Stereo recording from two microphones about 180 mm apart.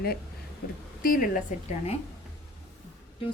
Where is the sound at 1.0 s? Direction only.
50° left (ahead or behind).